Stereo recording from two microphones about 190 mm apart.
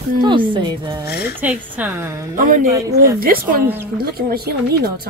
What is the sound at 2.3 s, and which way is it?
Speech, 45° right (ahead or behind).